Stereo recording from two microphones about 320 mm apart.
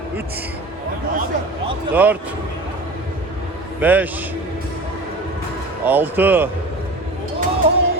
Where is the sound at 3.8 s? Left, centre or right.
Centre.